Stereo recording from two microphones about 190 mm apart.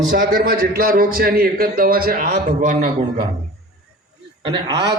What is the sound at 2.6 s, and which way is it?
Speech, 35° right (ahead or behind).